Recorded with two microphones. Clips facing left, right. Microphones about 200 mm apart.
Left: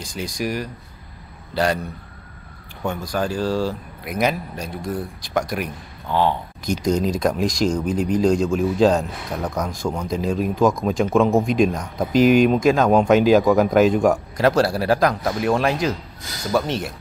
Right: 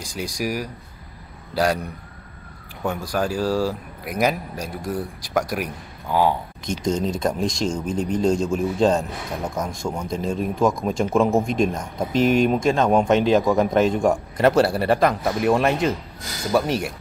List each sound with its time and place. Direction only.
0.0 s a man's voice: 10° right (ahead or behind)
2.8 s speech: 10° right (ahead or behind)
6.6 s speech: 25° right (ahead or behind)
7.0 s a man's voice: centre (ahead or behind)